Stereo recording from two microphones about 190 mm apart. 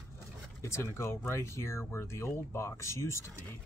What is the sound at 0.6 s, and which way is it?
Speech, 15° left (ahead or behind).